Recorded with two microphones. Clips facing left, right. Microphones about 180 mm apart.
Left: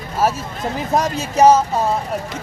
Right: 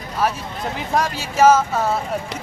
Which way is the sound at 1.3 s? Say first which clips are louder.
Left 2 dB; 35° left (ahead or behind).